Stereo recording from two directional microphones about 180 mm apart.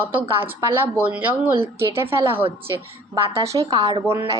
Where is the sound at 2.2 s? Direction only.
30° right (ahead or behind).